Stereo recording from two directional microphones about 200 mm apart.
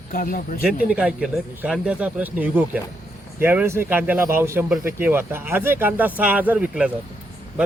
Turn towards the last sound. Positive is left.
turn(degrees=-5)  # may be behind; listen again after turning